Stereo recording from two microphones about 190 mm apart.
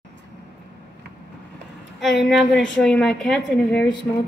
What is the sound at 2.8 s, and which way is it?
A woman's voice, 5° left (ahead or behind).